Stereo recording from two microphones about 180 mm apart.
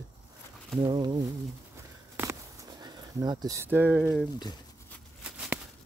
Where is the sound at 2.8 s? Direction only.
20° right (ahead or behind).